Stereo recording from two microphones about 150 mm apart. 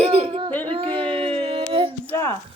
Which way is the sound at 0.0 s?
40° right (ahead or behind).